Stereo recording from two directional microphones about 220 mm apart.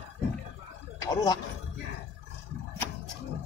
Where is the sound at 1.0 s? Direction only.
15° left (ahead or behind).